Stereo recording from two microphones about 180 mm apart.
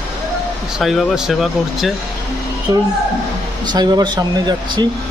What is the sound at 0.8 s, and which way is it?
Speech, centre (ahead or behind).